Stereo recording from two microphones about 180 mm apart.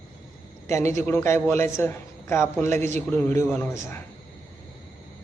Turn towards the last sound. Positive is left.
turn(degrees=15)  # may be behind; listen again after turning